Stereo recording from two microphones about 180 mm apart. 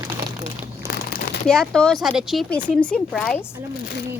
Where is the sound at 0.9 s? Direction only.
55° left (ahead or behind).